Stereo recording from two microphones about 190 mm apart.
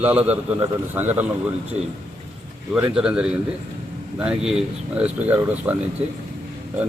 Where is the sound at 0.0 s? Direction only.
10° right (ahead or behind).